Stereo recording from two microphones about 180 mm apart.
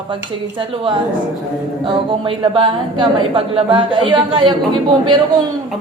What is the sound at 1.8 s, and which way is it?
A man's voice, 25° right (ahead or behind).